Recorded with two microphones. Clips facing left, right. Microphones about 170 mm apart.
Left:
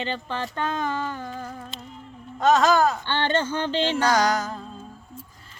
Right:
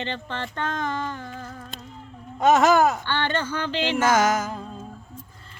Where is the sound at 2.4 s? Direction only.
20° right (ahead or behind).